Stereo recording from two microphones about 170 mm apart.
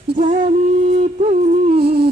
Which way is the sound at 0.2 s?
30° right (ahead or behind).